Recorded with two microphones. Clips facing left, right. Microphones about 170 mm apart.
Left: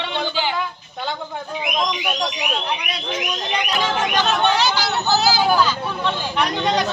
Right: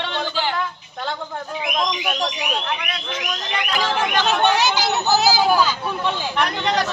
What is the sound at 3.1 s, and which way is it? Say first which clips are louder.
Fire alarm: left 4 dB; 20° left (ahead or behind).